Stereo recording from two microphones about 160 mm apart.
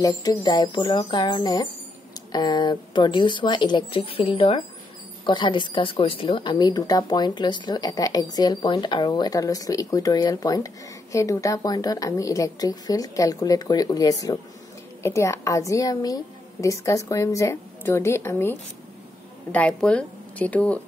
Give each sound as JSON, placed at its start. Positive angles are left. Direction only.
{"t": 0.0, "sound": "a woman's voice", "side_deg": 20}